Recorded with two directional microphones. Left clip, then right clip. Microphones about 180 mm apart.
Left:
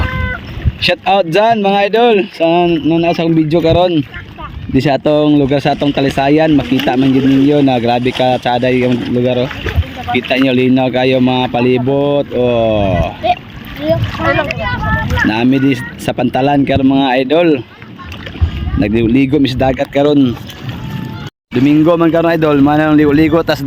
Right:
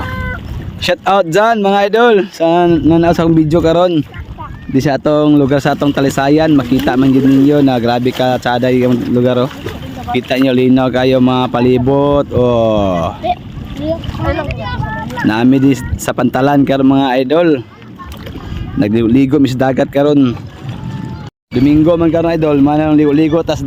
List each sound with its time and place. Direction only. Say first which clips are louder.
0.0 s boat: left 2 dB; 50° right (ahead or behind)
0.8 s a man's voice: even; 10° right (ahead or behind)
3.3 s a man's voice: even; 10° right (ahead or behind)
7.2 s speech: right 1 dB; 45° right (ahead or behind)
7.5 s a man's voice: even; 5° right (ahead or behind)
8.9 s speech: right 1 dB; 45° right (ahead or behind)
9.1 s a man's voice: right 1 dB; 20° right (ahead or behind)
13.8 s speech: left 4 dB; 5° left (ahead or behind)
15.3 s a man's voice: right 4 dB; 15° right (ahead or behind)
18.8 s a man's voice: right 1 dB; 5° right (ahead or behind)
21.5 s speech: even; 5° right (ahead or behind)